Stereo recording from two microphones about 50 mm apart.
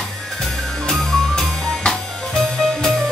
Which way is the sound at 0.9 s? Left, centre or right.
Centre.